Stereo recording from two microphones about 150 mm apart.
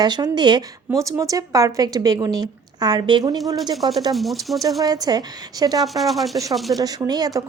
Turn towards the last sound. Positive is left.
turn(degrees=-25)  # may be behind; listen again after turning